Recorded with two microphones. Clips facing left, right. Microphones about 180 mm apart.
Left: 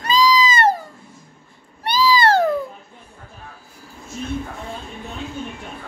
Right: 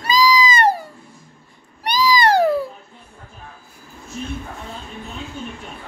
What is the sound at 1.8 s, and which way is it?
Cat, 15° right (ahead or behind).